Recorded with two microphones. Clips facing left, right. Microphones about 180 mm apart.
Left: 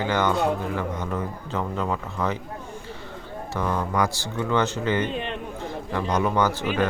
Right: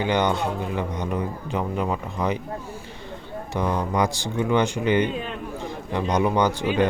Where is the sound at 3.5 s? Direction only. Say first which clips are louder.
Right 2 dB; 15° right (ahead or behind).